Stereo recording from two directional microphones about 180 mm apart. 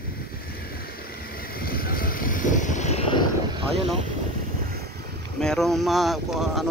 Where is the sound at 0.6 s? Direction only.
55° left (ahead or behind); by 3.0 s 40° left (ahead or behind).